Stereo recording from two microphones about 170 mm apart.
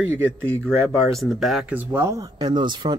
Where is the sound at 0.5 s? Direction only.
5° left (ahead or behind).